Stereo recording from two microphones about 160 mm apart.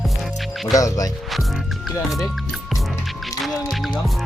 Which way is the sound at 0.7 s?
20° left (ahead or behind).